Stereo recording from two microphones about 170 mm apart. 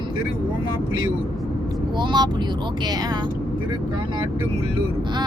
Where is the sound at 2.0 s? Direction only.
25° right (ahead or behind).